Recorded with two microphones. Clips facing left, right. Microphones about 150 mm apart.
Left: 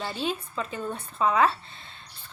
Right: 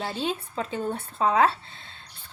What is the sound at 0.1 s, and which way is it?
A woman's voice, 30° right (ahead or behind).